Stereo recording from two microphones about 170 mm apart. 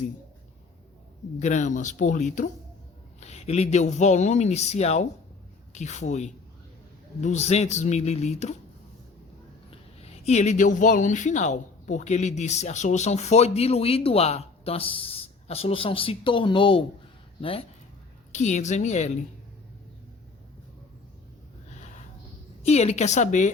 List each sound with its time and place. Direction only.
1.4 s speech: 45° left (ahead or behind)
9.6 s speech: 35° left (ahead or behind)
18.3 s speech: 45° left (ahead or behind)
22.6 s speech: 40° left (ahead or behind)